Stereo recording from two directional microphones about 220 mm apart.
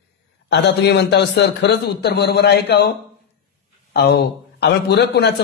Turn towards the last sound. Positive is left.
turn(degrees=50)  # may be behind; listen again after turning